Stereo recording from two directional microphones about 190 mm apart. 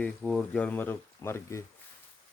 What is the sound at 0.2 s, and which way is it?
Speech, centre (ahead or behind).